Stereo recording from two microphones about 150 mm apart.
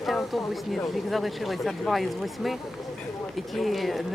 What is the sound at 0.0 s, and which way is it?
Speech, centre (ahead or behind).